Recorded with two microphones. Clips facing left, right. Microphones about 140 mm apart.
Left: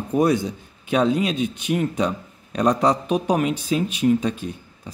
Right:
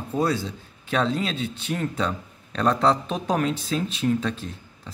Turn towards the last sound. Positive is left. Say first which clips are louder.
# left 4 dB
turn(degrees=15)  # may be behind; listen again after turning